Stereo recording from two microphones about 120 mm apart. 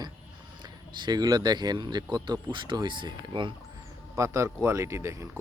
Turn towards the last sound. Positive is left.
turn(degrees=-25)  # may be behind; listen again after turning